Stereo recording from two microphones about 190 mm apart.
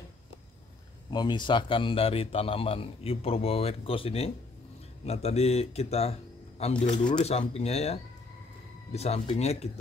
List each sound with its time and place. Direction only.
1.1 s a man's voice: 25° left (ahead or behind)